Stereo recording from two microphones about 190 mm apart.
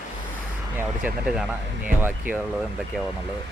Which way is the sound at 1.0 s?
5° right (ahead or behind).